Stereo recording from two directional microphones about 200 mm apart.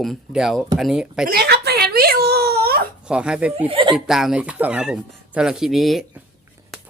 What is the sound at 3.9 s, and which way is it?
Speech, centre (ahead or behind).